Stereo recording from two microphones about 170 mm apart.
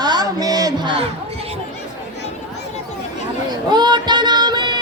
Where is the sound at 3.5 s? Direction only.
25° right (ahead or behind).